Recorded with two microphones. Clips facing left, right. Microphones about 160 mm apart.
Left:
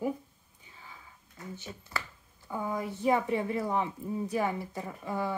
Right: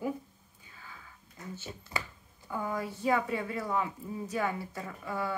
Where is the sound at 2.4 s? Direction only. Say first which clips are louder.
Left 1 dB; 15° left (ahead or behind).